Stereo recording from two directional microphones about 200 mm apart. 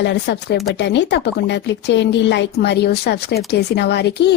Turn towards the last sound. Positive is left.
turn(degrees=55)  # may be behind; listen again after turning